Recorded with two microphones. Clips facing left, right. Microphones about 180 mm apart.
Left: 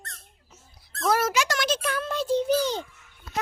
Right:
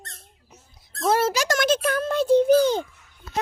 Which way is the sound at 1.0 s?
30° right (ahead or behind).